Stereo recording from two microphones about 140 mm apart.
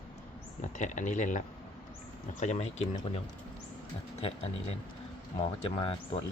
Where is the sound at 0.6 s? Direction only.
60° left (ahead or behind).